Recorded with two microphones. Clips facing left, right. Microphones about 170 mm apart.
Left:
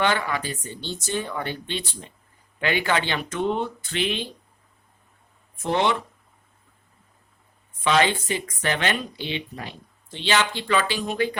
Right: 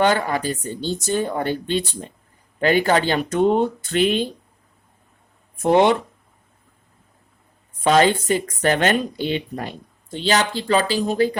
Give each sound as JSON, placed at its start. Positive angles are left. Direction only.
{"t": 0.0, "sound": "speech", "side_deg": -40}
{"t": 5.6, "sound": "speech", "side_deg": -50}
{"t": 7.9, "sound": "speech", "side_deg": -45}